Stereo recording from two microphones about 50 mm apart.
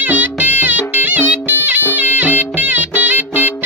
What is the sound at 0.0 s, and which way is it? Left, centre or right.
Music, right.